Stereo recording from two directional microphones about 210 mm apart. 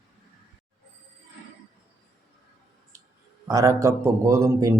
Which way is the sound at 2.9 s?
15° right (ahead or behind).